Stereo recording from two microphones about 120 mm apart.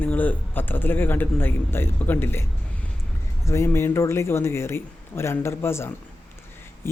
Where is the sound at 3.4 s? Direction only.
20° left (ahead or behind).